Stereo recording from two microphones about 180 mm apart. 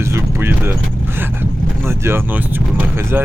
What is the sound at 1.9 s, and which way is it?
Speech, 15° right (ahead or behind).